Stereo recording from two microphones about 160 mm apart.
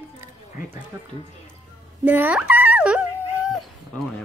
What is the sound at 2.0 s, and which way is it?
Dog, 10° right (ahead or behind).